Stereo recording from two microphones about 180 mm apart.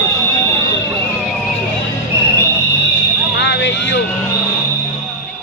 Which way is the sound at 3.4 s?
75° left (ahead or behind).